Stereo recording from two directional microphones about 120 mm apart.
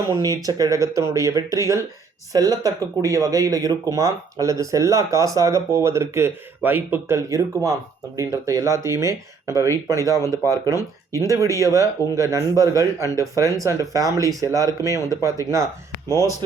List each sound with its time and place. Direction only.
0.1 s speech: 30° right (ahead or behind)